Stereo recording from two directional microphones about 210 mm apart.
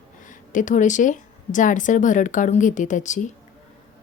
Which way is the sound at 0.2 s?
35° left (ahead or behind).